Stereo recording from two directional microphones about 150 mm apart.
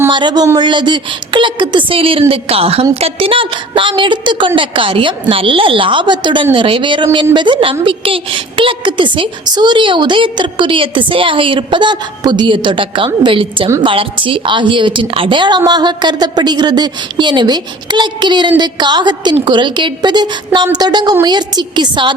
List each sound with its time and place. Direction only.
0.1 s a woman's voice: 30° right (ahead or behind)